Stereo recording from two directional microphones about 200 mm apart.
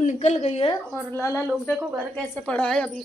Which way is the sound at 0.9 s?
10° left (ahead or behind).